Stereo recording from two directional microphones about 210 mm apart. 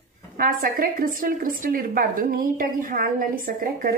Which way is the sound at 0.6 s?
45° right (ahead or behind).